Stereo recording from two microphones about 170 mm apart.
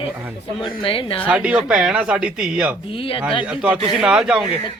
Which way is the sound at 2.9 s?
30° left (ahead or behind).